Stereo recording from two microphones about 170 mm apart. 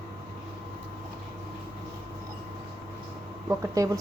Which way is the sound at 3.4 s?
20° right (ahead or behind).